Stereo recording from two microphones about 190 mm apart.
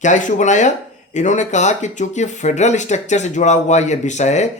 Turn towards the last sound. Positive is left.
turn(degrees=40)  # may be behind; listen again after turning